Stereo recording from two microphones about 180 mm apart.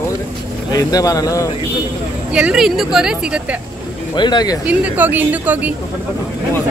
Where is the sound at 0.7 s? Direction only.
20° left (ahead or behind).